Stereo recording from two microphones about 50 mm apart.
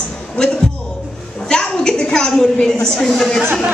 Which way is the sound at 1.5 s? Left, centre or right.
Centre.